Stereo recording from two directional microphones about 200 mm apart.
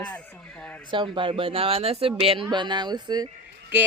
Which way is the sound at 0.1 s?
5° left (ahead or behind).